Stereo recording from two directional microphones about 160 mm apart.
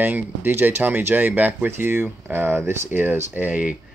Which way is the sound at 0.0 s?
15° right (ahead or behind).